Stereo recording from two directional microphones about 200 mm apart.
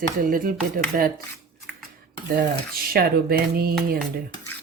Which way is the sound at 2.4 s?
50° right (ahead or behind).